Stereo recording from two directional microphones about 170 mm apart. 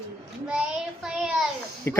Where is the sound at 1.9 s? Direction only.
15° left (ahead or behind).